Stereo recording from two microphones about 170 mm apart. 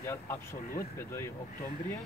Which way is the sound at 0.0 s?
15° left (ahead or behind).